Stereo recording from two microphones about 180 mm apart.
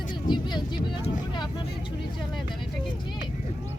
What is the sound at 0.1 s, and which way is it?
Vehicle, 25° left (ahead or behind).